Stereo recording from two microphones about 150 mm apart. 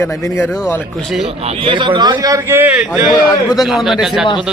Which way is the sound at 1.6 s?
35° right (ahead or behind).